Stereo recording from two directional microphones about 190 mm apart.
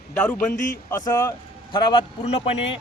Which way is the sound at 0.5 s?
40° left (ahead or behind).